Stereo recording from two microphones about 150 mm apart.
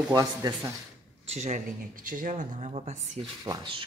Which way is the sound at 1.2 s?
50° right (ahead or behind).